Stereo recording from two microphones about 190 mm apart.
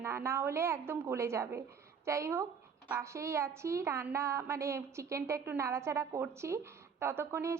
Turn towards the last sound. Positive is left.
turn(degrees=-15)  # may be behind; listen again after turning